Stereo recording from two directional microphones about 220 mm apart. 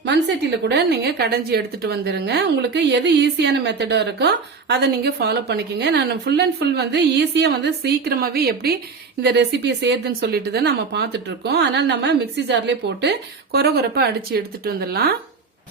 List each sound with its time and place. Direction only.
0.0 s a woman's voice: 50° right (ahead or behind)